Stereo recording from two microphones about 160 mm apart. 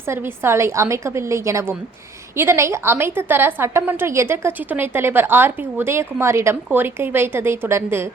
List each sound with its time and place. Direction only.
0.1 s a woman's voice: 15° right (ahead or behind)